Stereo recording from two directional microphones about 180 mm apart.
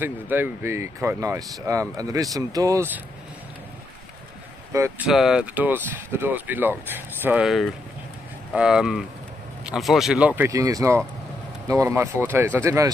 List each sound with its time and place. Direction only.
0.0 s speech: 10° right (ahead or behind)
4.7 s speech: 10° right (ahead or behind)